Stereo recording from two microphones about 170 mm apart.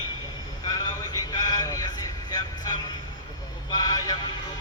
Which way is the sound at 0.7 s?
20° left (ahead or behind).